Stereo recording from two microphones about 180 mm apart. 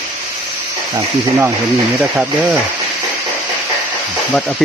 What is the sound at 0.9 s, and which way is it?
Speech, 10° right (ahead or behind).